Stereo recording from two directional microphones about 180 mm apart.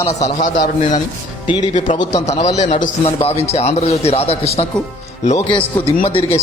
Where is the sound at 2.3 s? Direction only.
35° left (ahead or behind).